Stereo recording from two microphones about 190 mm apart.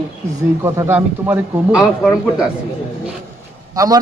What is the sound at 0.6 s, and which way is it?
Speech, 15° right (ahead or behind).